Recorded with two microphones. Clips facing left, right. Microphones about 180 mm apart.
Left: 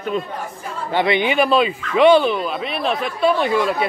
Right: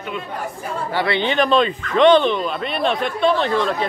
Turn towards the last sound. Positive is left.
turn(degrees=10)  # may be behind; listen again after turning